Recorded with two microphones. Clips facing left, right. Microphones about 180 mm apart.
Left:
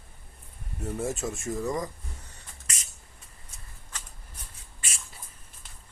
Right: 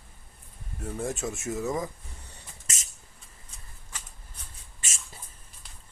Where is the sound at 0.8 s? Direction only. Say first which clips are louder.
Left 1 dB; 5° left (ahead or behind).